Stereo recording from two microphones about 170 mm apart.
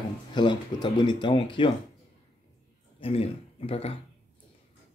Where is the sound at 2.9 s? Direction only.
35° left (ahead or behind).